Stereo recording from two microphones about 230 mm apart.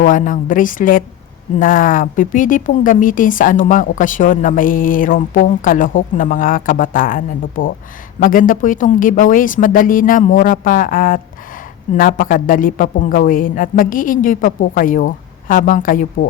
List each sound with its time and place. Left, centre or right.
0.0 s speech: left